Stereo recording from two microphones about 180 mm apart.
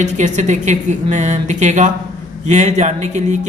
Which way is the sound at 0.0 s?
40° right (ahead or behind).